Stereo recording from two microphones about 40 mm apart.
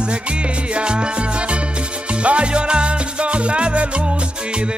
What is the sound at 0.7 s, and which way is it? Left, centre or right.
Music, right.